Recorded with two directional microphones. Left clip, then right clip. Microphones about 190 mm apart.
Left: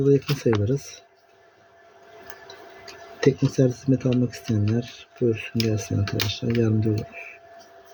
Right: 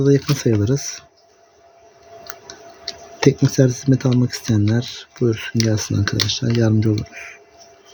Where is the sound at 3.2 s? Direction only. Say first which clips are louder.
Right 5 dB; 55° right (ahead or behind).